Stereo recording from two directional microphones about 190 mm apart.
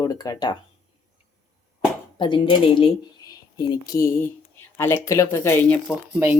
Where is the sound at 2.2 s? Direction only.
25° left (ahead or behind); by 5.8 s 10° left (ahead or behind).